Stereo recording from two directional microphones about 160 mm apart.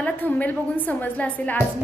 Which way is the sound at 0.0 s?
10° left (ahead or behind).